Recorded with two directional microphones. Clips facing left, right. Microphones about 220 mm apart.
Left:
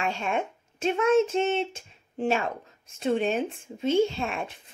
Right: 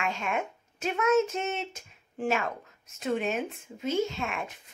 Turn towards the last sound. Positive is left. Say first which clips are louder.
# left 3 dB
turn(degrees=30)  # may be behind; listen again after turning